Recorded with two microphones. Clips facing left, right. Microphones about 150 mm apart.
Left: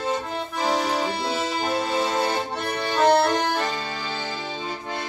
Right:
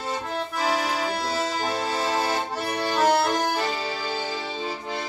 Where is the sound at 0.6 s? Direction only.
5° right (ahead or behind).